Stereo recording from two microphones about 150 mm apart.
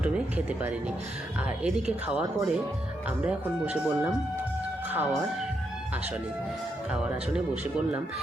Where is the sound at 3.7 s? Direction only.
10° right (ahead or behind).